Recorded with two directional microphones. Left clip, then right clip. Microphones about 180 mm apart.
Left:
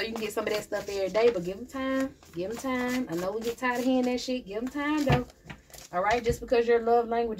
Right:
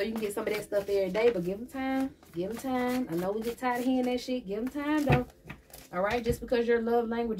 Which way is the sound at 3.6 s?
40° left (ahead or behind).